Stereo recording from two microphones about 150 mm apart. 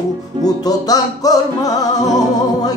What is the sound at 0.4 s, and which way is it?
Music, 25° left (ahead or behind).